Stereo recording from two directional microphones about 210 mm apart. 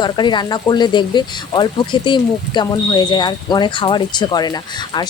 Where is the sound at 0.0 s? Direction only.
20° left (ahead or behind).